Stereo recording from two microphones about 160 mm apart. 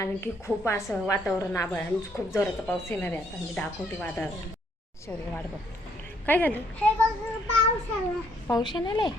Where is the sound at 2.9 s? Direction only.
10° left (ahead or behind).